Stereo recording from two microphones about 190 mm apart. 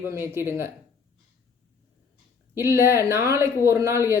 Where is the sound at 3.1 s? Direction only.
15° right (ahead or behind).